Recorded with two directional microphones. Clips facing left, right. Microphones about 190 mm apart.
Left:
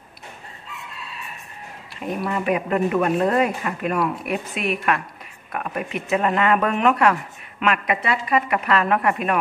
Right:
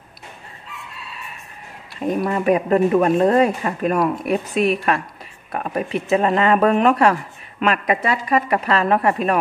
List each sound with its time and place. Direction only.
2.0 s speech: 40° right (ahead or behind)